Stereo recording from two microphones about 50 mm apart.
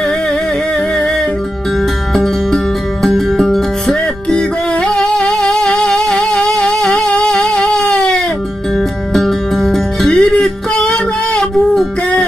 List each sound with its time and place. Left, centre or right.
2.1 s music: centre
4.3 s music: centre
8.7 s music: centre
10.1 s music: centre
11.7 s music: centre